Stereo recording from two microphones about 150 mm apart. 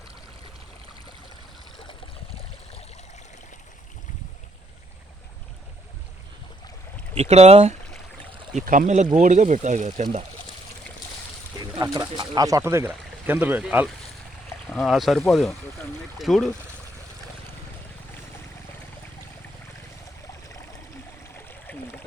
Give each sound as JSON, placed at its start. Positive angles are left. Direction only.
{"t": 1.8, "sound": "stream", "side_deg": 40}
{"t": 7.2, "sound": "speech", "side_deg": -45}
{"t": 8.5, "sound": "speech", "side_deg": -65}
{"t": 11.6, "sound": "speech", "side_deg": -25}
{"t": 21.3, "sound": "stream", "side_deg": 10}